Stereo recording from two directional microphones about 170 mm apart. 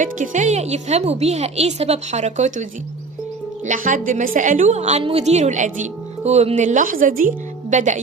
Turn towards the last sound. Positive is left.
turn(degrees=-45)  # may be behind; listen again after turning